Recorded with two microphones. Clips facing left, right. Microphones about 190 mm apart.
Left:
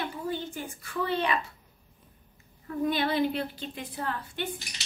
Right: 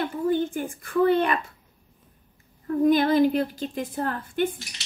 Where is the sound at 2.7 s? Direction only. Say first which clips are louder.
Right 8 dB; 45° right (ahead or behind).